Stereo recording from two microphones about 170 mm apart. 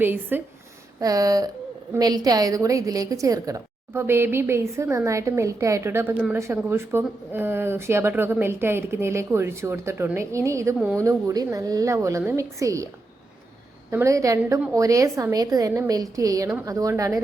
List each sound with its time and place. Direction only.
0.0 s a woman's voice: 10° right (ahead or behind)
13.9 s a woman's voice: 20° right (ahead or behind)